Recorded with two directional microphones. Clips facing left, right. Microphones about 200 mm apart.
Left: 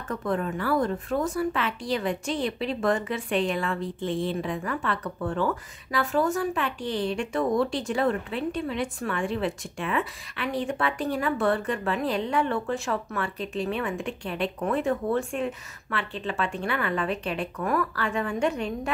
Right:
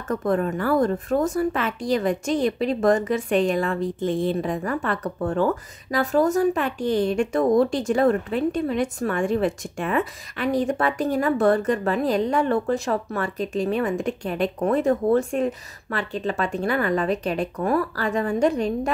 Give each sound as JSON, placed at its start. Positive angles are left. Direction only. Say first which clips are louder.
{"t": 0.1, "sound": "a woman's voice", "louder": "right 6 dB", "side_deg": -45}